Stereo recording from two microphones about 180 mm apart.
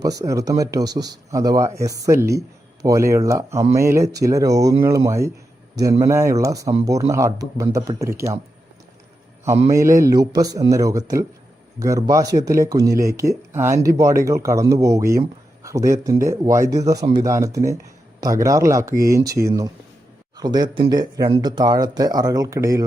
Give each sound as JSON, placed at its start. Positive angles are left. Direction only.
{"t": 0.0, "sound": "speech", "side_deg": -20}
{"t": 9.7, "sound": "speech", "side_deg": -15}